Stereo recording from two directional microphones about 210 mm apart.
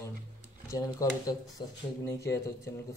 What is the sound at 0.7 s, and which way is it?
Speech, 15° left (ahead or behind).